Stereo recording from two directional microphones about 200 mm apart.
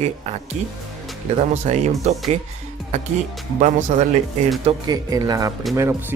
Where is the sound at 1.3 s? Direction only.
35° right (ahead or behind).